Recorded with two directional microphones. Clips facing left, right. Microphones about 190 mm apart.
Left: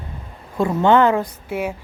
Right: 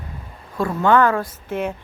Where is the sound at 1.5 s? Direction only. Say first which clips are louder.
Right 1 dB; 10° left (ahead or behind).